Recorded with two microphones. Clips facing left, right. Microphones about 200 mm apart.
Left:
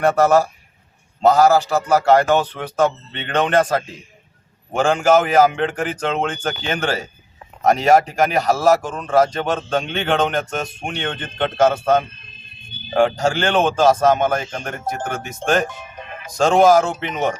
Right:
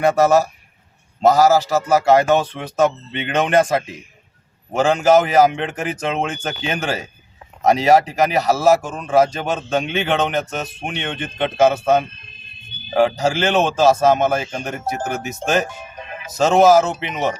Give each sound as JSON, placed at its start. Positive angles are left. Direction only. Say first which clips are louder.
{"t": 0.0, "sound": "speech", "louder": "even", "side_deg": -10}